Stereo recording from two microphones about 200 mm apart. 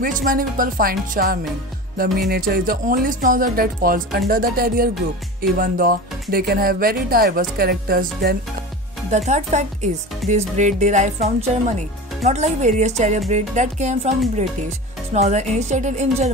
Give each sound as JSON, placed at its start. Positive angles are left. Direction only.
{"t": 0.0, "sound": "speech", "side_deg": -45}
{"t": 9.1, "sound": "speech", "side_deg": -35}
{"t": 15.1, "sound": "speech", "side_deg": -35}